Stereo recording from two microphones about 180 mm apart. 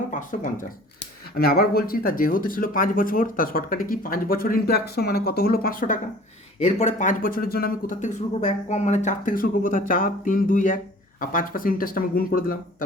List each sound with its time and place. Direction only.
0.1 s speech: 45° left (ahead or behind)
1.4 s speech: 60° left (ahead or behind)
6.6 s speech: 40° left (ahead or behind)